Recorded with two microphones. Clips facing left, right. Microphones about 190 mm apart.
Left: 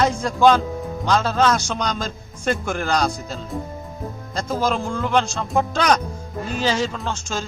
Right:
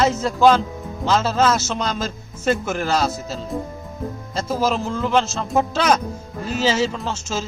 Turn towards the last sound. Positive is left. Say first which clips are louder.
# right 1 dB
turn(degrees=-5)  # may be behind; listen again after turning